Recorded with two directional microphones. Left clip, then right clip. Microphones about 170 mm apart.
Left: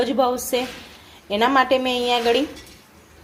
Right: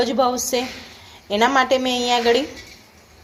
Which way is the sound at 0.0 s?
5° left (ahead or behind).